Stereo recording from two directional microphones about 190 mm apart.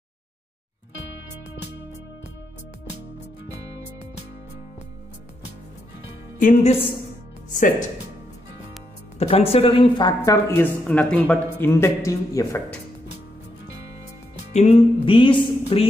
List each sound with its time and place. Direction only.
6.4 s speech: 35° left (ahead or behind)
9.2 s a woman's voice: 30° left (ahead or behind); by 12.7 s 15° left (ahead or behind)
14.5 s music: 35° left (ahead or behind)